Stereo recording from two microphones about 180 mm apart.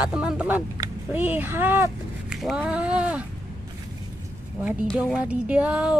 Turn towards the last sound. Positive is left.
turn(degrees=-5)  # may be behind; listen again after turning